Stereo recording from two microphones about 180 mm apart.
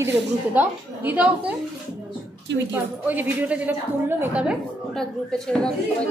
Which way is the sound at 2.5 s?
80° right.